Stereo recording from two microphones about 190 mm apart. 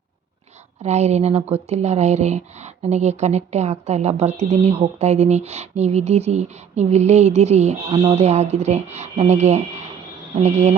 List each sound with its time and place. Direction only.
0.8 s speech: 35° right (ahead or behind)